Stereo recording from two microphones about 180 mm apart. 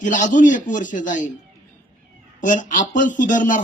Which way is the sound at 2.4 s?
45° left (ahead or behind).